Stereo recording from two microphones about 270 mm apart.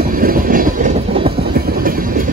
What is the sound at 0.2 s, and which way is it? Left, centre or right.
Train, right.